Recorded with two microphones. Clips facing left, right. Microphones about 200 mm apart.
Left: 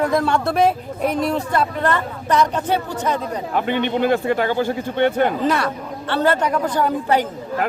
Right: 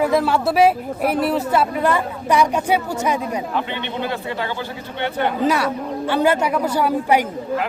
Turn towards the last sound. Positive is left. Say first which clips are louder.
# right 1 dB
turn(degrees=-10)  # may be behind; listen again after turning